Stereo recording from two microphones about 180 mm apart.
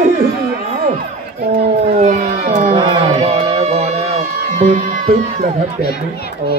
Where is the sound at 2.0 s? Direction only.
40° right (ahead or behind).